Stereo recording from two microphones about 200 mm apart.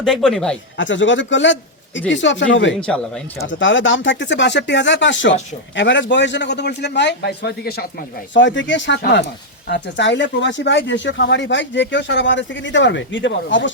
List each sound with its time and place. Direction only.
0.0 s speech: centre (ahead or behind)
0.8 s speech: 70° left (ahead or behind)
2.8 s speech: 5° left (ahead or behind)
3.4 s speech: 70° left (ahead or behind); by 7.9 s 55° left (ahead or behind)
8.3 s speech: 65° left (ahead or behind)